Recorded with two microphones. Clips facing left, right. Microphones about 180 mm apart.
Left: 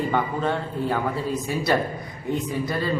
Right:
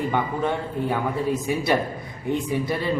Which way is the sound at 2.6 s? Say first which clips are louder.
Right 1 dB; 20° right (ahead or behind).